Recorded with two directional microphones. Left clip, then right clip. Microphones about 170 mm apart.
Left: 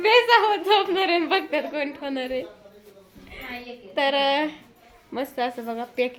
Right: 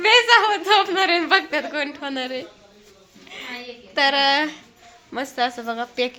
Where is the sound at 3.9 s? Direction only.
Centre (ahead or behind).